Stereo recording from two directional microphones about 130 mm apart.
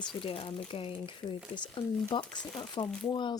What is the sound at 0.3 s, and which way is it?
Speech, 45° left (ahead or behind).